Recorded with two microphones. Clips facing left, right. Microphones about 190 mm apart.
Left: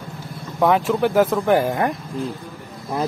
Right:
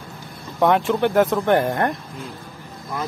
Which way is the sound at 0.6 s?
Centre (ahead or behind).